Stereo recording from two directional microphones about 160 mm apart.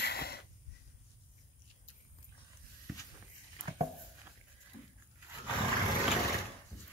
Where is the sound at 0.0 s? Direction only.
85° left.